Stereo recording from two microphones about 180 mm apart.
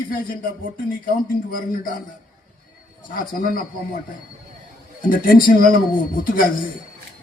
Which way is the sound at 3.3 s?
50° left (ahead or behind).